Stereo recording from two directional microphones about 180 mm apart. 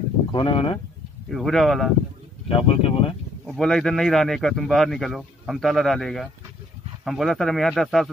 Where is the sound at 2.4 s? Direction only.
30° left (ahead or behind).